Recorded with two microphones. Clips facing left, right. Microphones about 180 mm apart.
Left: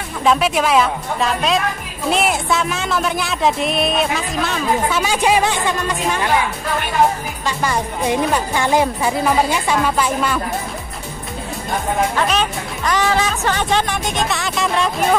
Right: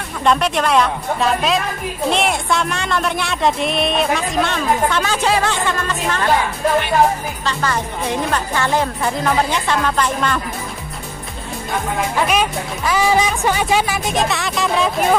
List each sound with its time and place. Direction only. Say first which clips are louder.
0.2 s speech: left 1 dB; 5° left (ahead or behind)
7.4 s speech: left 1 dB; 15° left (ahead or behind)
12.2 s speech: right 1 dB; 10° right (ahead or behind)